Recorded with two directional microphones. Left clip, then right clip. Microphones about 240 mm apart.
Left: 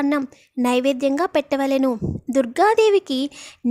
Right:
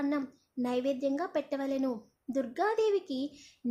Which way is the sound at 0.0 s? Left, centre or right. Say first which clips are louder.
Left 11 dB; left.